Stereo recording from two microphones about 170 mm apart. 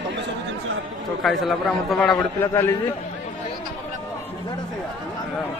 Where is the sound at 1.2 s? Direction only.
Centre (ahead or behind).